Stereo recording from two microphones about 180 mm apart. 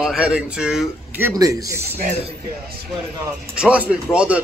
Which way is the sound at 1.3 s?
20° right (ahead or behind).